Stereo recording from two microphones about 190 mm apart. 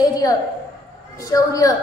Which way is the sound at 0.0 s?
20° left (ahead or behind).